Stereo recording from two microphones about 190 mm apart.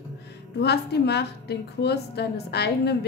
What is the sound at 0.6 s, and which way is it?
A woman's voice, 60° left (ahead or behind).